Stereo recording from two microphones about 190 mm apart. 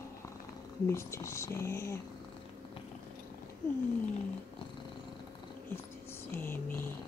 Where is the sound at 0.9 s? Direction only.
15° left (ahead or behind).